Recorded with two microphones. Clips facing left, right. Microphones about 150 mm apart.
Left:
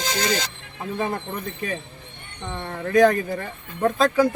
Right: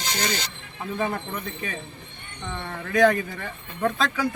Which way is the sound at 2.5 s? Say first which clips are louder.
Left 3 dB; 25° left (ahead or behind).